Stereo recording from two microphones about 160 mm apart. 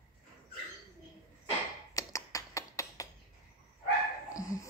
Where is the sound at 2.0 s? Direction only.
20° left (ahead or behind).